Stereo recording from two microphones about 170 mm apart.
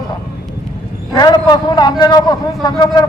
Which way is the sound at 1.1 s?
25° left (ahead or behind).